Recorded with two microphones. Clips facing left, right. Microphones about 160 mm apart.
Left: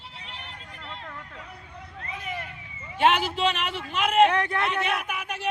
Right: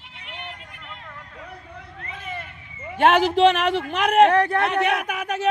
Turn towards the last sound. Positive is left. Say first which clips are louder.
# right 6 dB
turn(degrees=-50)  # may be behind; listen again after turning